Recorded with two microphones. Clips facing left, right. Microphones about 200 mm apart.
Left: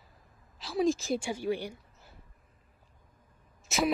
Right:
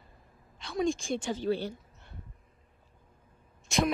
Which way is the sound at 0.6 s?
Centre (ahead or behind).